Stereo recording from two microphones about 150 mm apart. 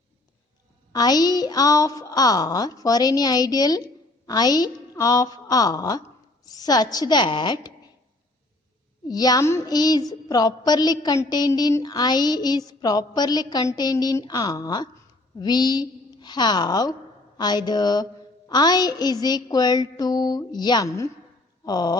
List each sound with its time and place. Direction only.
0.9 s music: 25° left (ahead or behind)
9.0 s music: 25° left (ahead or behind)
21.6 s speech: 25° left (ahead or behind)